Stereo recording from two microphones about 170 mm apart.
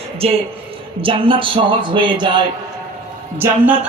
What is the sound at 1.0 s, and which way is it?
Music, 30° right (ahead or behind).